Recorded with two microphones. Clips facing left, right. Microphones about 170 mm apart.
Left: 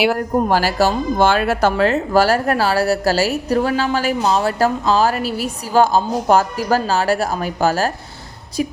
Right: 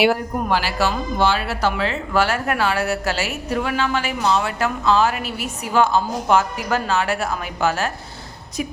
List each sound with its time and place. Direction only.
0.4 s a woman's voice: 40° left (ahead or behind)